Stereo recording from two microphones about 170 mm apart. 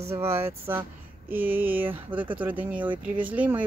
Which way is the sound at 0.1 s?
15° right (ahead or behind).